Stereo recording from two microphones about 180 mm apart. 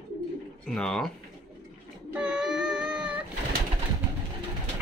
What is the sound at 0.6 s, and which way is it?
Speech, 5° left (ahead or behind).